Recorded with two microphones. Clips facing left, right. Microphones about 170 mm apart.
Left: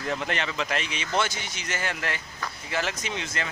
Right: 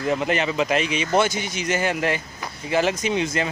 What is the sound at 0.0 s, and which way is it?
Speech, 10° right (ahead or behind).